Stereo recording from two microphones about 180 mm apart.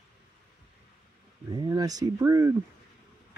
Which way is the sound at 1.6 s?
20° right (ahead or behind).